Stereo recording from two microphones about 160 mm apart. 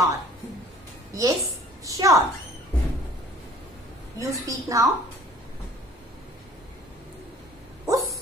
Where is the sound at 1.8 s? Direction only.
20° right (ahead or behind).